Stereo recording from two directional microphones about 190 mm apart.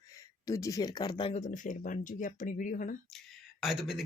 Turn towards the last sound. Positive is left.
turn(degrees=0)  # may be behind; listen again after turning